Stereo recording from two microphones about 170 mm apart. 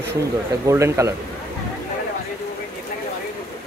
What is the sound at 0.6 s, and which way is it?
Speech, 15° right (ahead or behind).